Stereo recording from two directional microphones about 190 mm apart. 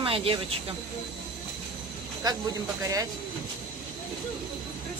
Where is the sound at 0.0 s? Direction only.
30° right (ahead or behind).